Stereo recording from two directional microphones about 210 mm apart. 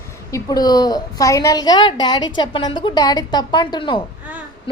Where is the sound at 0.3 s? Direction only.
15° left (ahead or behind).